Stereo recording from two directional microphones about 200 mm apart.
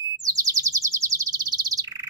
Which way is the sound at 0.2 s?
15° right (ahead or behind).